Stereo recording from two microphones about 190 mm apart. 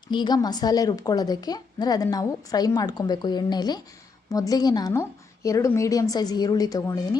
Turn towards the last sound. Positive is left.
turn(degrees=20)  # may be behind; listen again after turning